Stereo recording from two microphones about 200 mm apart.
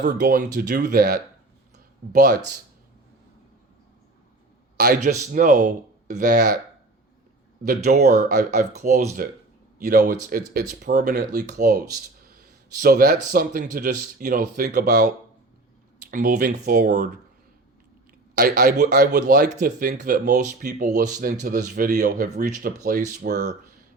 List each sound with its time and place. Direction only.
0.0 s speech: 50° right (ahead or behind)
4.8 s speech: 50° right (ahead or behind)
7.6 s speech: 50° right (ahead or behind)
8.8 s speech: 35° right (ahead or behind)
12.8 s speech: 50° right (ahead or behind)
18.3 s speech: 50° right (ahead or behind)